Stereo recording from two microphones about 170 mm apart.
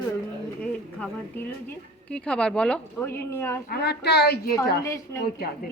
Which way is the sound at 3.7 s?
75° left (ahead or behind).